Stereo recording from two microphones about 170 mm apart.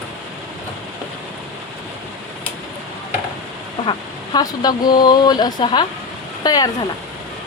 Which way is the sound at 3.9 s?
25° left (ahead or behind).